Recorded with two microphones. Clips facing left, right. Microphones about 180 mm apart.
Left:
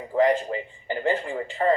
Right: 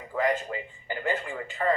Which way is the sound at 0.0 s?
30° left (ahead or behind).